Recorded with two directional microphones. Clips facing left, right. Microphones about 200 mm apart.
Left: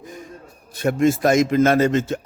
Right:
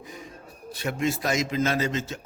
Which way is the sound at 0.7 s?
50° left (ahead or behind).